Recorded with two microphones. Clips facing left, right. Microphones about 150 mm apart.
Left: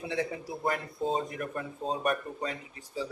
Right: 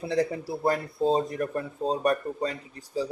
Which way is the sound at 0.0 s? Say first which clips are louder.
Right 6 dB; 35° right (ahead or behind).